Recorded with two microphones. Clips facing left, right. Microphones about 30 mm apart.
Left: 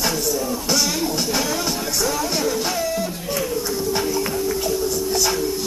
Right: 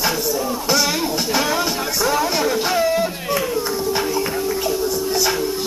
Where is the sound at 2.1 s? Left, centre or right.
Right.